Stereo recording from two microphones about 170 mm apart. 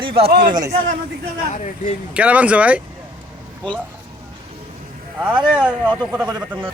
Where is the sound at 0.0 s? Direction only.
30° right (ahead or behind).